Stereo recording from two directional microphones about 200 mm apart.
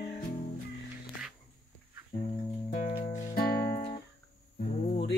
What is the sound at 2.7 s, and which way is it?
Music, 30° left (ahead or behind).